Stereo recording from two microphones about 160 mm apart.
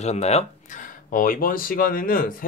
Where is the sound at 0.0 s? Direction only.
45° left (ahead or behind).